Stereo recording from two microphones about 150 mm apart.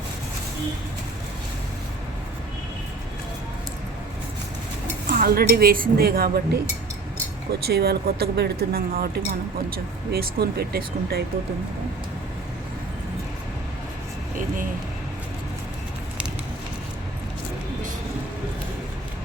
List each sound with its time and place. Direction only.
5.0 s speech: 80° right
7.7 s speech: 90° right
14.3 s vehicle: 65° right (ahead or behind)